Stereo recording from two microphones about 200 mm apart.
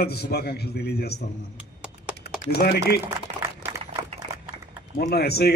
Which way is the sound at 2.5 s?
55° left (ahead or behind).